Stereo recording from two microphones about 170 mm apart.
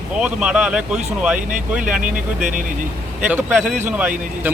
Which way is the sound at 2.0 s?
50° right (ahead or behind).